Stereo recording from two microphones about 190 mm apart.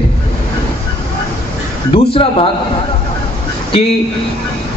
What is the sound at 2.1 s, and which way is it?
Speech, 30° left (ahead or behind).